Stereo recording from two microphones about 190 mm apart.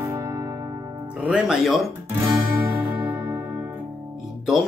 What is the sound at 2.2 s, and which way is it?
Music, 10° right (ahead or behind).